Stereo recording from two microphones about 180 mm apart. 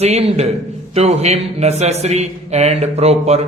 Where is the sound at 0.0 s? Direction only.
35° right (ahead or behind).